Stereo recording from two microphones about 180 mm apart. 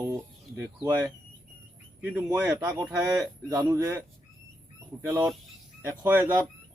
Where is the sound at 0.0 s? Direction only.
15° right (ahead or behind).